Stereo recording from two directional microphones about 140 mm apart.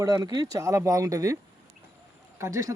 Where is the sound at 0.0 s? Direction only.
25° right (ahead or behind).